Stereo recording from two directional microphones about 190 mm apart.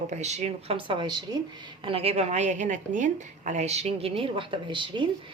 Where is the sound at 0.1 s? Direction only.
35° right (ahead or behind).